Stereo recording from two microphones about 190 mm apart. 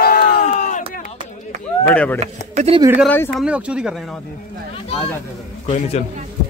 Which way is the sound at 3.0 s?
10° left (ahead or behind).